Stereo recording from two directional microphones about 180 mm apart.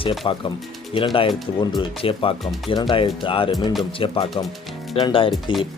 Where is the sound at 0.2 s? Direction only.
25° left (ahead or behind).